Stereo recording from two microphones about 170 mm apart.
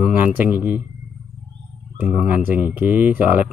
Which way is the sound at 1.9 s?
10° right (ahead or behind).